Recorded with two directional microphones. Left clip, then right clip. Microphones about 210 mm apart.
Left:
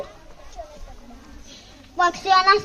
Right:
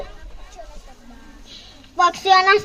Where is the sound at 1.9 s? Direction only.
35° right (ahead or behind).